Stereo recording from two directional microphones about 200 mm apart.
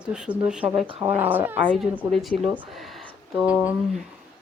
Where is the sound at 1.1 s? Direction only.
10° right (ahead or behind).